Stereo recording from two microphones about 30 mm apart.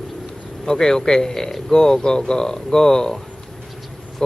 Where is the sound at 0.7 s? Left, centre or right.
Centre.